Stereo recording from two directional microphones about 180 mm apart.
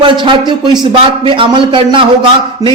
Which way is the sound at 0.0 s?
25° right (ahead or behind).